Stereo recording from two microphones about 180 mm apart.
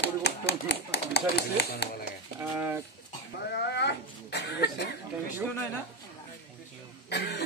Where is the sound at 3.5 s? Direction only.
70° left (ahead or behind).